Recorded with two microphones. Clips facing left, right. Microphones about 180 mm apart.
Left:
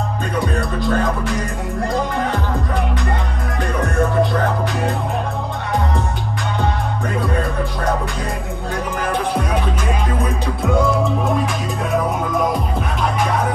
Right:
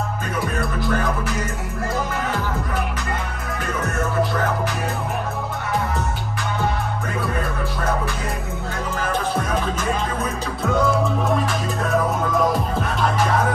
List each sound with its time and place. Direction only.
0.6 s music: 25° left (ahead or behind)